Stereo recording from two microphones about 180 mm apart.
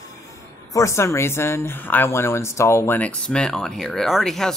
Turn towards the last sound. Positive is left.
turn(degrees=0)  # may be behind; listen again after turning